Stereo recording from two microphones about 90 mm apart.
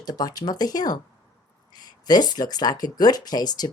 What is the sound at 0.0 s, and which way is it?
Speech, 45° left (ahead or behind).